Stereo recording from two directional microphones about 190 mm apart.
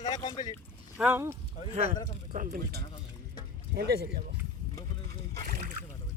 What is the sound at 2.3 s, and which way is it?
Speech, 45° right (ahead or behind).